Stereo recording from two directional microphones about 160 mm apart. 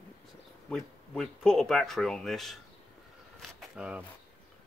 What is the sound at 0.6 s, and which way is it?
Speech, 5° left (ahead or behind).